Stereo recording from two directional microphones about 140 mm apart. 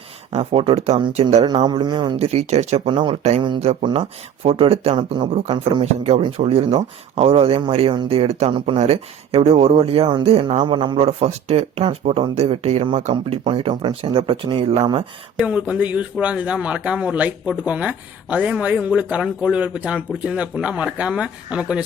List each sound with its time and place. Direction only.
0.3 s speech: 45° right (ahead or behind)
1.6 s speech: 30° right (ahead or behind)
2.1 s speech: 50° right (ahead or behind)
10.6 s speech: 35° right (ahead or behind)
10.9 s speech: 50° right (ahead or behind)
15.4 s speech: 10° right (ahead or behind)